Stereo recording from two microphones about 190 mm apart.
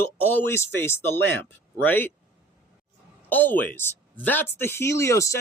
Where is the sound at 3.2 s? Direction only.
10° left (ahead or behind).